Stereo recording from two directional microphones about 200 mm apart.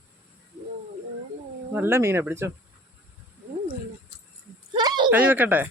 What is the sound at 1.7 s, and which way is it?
Speech, 10° right (ahead or behind).